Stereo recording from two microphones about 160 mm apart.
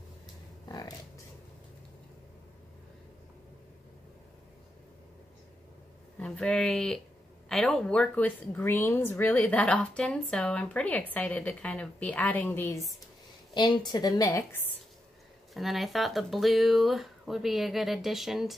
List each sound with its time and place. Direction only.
0.7 s a sound: 25° left (ahead or behind)
6.1 s a woman's voice: 5° left (ahead or behind)
13.6 s a woman's voice: 30° left (ahead or behind)
15.5 s speech: centre (ahead or behind)